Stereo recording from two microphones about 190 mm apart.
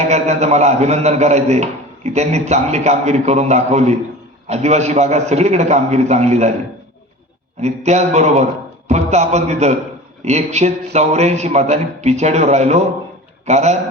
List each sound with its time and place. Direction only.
0.1 s a man's voice: 35° right (ahead or behind)
7.6 s a man's voice: 35° right (ahead or behind)